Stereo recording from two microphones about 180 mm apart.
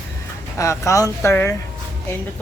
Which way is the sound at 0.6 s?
15° left (ahead or behind).